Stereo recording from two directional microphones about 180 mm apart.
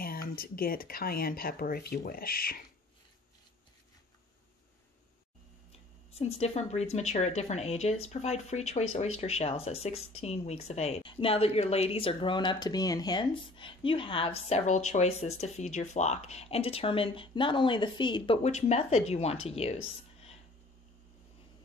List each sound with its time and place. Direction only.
0.0 s speech: 55° left (ahead or behind)
5.7 s speech: 35° left (ahead or behind)